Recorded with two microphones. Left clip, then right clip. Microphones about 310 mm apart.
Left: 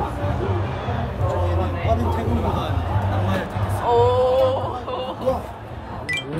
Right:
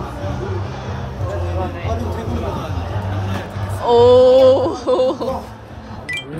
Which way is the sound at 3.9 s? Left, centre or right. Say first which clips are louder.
Right 8 dB; right.